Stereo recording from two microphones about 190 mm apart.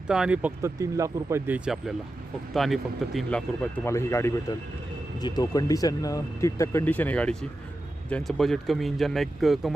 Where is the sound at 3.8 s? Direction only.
15° left (ahead or behind).